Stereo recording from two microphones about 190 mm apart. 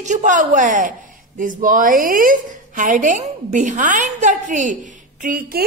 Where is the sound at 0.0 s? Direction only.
40° right (ahead or behind).